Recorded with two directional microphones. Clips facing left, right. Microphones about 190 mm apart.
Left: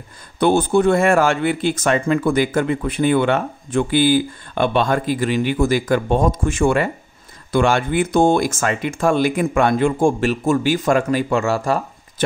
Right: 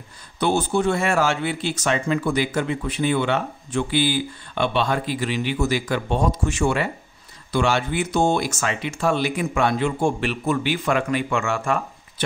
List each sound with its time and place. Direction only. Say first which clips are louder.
0.4 s speech: left 6 dB; 55° left (ahead or behind); by 11.8 s 35° left (ahead or behind)